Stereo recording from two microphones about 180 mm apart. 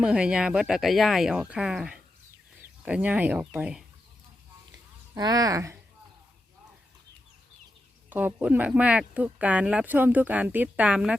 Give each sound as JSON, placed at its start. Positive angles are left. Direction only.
{"t": 0.0, "sound": "speech", "side_deg": -5}
{"t": 5.1, "sound": "speech", "side_deg": -20}
{"t": 8.1, "sound": "speech", "side_deg": -10}